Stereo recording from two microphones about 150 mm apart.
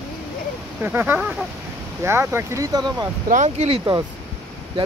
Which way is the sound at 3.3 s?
55° right (ahead or behind).